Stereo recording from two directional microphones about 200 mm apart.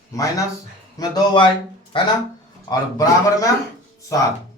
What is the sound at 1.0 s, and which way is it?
A man's voice, 20° left (ahead or behind).